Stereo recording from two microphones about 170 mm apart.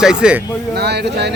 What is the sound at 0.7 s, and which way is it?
Speech, 75° right (ahead or behind).